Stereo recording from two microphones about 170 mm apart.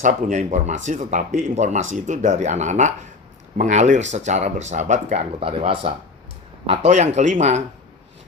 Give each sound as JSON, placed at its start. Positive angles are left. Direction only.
{"t": 0.0, "sound": "speech", "side_deg": -45}